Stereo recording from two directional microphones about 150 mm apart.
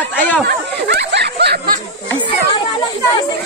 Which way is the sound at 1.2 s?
90° right.